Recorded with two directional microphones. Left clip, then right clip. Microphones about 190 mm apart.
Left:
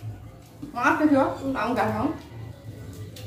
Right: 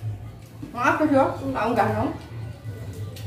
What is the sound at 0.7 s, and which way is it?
A woman's voice, 10° left (ahead or behind).